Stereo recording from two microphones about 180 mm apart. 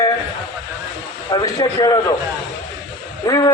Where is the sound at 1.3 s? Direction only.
20° left (ahead or behind).